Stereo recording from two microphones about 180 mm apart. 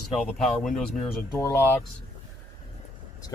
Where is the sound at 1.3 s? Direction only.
15° left (ahead or behind).